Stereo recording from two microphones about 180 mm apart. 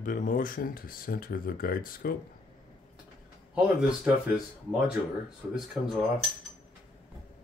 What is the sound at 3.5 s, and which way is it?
Speech, 5° right (ahead or behind).